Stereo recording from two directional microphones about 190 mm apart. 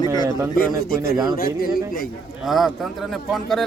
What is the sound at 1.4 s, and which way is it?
Speech, 50° left (ahead or behind).